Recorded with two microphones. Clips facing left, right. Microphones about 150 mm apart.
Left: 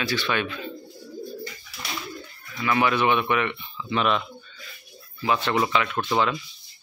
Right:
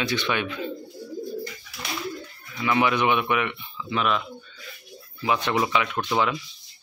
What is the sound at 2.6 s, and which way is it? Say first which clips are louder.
Speech: even; 15° right (ahead or behind).